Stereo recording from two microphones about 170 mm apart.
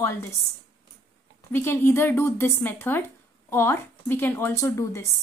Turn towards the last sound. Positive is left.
turn(degrees=15)  # may be behind; listen again after turning